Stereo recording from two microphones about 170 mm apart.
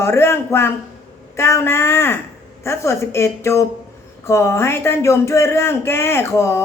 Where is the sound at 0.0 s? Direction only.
15° left (ahead or behind).